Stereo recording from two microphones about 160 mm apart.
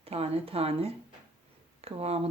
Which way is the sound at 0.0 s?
40° right (ahead or behind).